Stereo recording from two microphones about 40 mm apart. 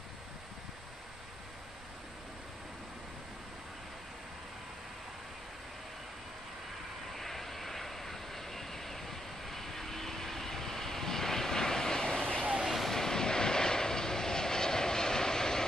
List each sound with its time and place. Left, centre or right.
7.2 s vehicle: centre; by 12.4 s left
12.7 s vehicle: centre